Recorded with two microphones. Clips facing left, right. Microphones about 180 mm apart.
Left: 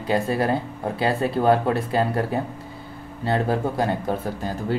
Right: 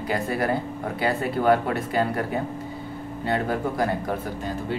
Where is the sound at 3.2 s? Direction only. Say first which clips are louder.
Left 3 dB; 30° left (ahead or behind).